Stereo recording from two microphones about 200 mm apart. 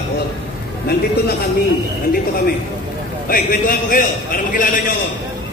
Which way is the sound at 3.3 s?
45° left (ahead or behind).